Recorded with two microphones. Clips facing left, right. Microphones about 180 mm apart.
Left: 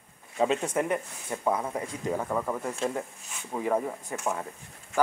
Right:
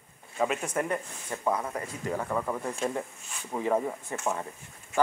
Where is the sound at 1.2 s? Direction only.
10° left (ahead or behind).